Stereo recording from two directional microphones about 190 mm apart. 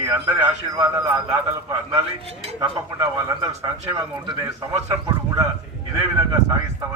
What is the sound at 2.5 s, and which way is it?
A man's voice, 15° right (ahead or behind).